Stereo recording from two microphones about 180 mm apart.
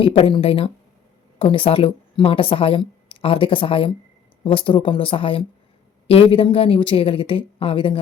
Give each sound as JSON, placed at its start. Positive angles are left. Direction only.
{"t": 0.0, "sound": "a woman's voice", "side_deg": 30}